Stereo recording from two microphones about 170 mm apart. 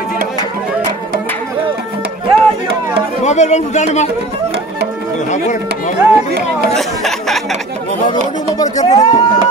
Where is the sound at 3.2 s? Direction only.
45° left (ahead or behind).